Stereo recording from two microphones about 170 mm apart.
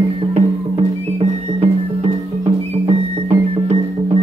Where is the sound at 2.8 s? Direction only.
35° right (ahead or behind).